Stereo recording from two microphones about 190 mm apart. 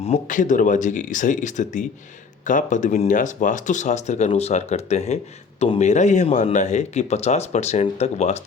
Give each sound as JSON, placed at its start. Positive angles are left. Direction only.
{"t": 0.0, "sound": "speech", "side_deg": 40}